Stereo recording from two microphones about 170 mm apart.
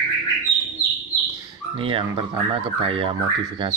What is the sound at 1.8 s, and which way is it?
Speech, 30° right (ahead or behind).